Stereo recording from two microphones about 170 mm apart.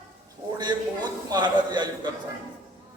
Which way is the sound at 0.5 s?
25° right (ahead or behind).